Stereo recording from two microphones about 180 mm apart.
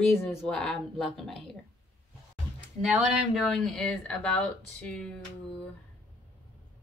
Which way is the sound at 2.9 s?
Centre (ahead or behind).